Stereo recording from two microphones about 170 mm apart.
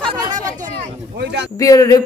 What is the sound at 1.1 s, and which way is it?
Speech, 85° right.